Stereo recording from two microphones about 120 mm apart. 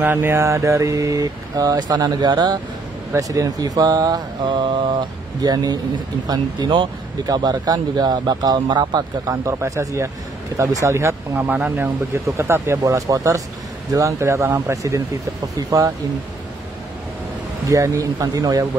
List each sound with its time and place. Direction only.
0.0 s mantra: 20° right (ahead or behind); by 2.6 s 35° right (ahead or behind)
3.1 s speech: 30° right (ahead or behind)
9.3 s mantra: 25° right (ahead or behind)
11.4 s speech: 10° right (ahead or behind)
11.7 s mantra: 20° right (ahead or behind)
17.6 s mantra: 30° right (ahead or behind)